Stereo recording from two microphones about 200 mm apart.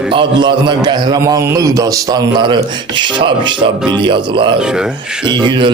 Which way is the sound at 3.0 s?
25° right (ahead or behind).